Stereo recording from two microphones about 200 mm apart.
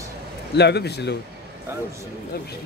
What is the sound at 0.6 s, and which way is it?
Speech, 55° left (ahead or behind).